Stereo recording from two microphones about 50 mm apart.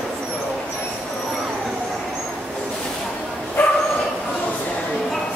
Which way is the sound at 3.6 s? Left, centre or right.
Left.